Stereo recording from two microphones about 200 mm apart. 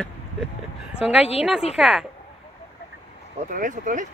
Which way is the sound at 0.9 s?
10° left (ahead or behind).